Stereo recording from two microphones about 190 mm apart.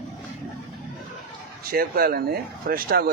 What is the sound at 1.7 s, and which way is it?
Speech, 50° right (ahead or behind).